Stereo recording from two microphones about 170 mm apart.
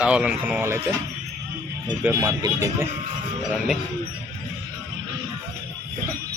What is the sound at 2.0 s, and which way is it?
Speech, 20° right (ahead or behind).